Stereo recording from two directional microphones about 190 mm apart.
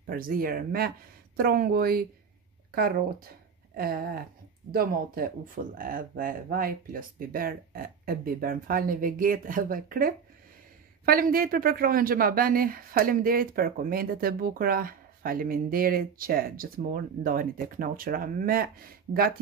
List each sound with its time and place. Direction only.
0.0 s speech: 50° right (ahead or behind)